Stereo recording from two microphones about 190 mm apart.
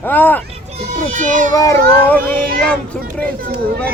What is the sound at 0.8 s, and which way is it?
Speech, 40° right (ahead or behind).